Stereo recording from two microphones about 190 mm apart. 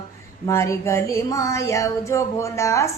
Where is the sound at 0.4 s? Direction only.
15° left (ahead or behind).